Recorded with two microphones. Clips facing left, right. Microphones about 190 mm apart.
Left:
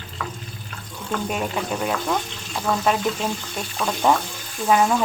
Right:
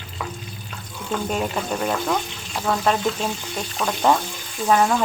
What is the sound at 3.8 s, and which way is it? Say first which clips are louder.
Speech: even; centre (ahead or behind).